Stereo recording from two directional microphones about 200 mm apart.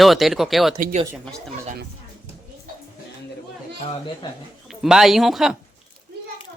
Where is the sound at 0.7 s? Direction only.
40° right (ahead or behind).